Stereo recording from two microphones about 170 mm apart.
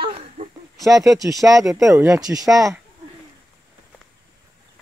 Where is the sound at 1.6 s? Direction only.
Centre (ahead or behind).